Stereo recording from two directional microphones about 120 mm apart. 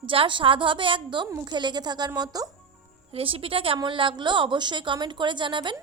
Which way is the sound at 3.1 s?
50° right (ahead or behind).